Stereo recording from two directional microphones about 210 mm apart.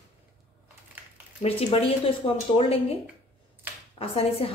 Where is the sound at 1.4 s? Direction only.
30° left (ahead or behind).